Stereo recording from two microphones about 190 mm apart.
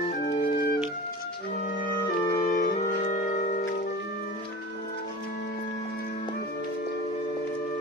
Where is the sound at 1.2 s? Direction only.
50° left (ahead or behind).